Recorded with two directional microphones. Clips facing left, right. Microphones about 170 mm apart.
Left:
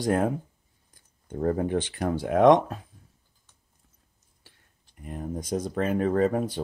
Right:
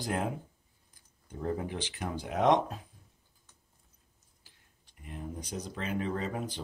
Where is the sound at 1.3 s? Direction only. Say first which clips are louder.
Left 9 dB; 50° left (ahead or behind).